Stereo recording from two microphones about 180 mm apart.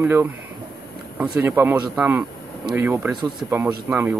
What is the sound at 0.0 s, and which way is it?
Speech, 15° right (ahead or behind).